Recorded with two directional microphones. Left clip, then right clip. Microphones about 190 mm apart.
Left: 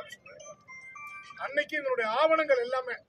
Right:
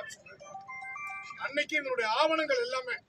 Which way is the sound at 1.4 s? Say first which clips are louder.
Left 1 dB; 10° right (ahead or behind).